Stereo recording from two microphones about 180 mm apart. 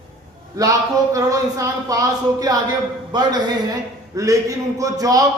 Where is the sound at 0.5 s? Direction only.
20° right (ahead or behind).